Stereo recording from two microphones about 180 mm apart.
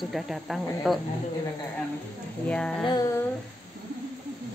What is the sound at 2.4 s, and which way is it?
Speech, 5° left (ahead or behind).